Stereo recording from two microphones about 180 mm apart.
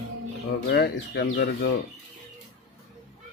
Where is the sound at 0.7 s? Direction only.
65° left (ahead or behind).